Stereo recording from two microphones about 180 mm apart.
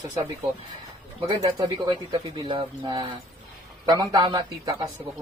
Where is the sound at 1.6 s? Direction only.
25° right (ahead or behind).